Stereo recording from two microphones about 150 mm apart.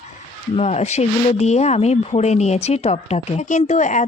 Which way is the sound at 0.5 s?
45° left (ahead or behind).